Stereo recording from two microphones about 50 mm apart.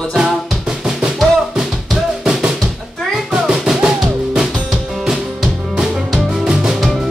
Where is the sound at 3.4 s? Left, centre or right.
Centre.